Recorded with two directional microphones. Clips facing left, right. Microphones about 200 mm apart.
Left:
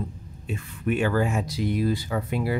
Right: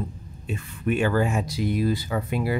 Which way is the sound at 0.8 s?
25° right (ahead or behind).